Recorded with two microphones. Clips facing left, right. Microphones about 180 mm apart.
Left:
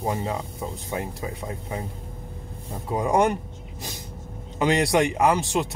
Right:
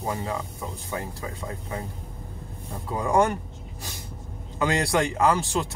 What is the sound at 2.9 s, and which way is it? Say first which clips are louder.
Speech: left 1 dB; 20° left (ahead or behind).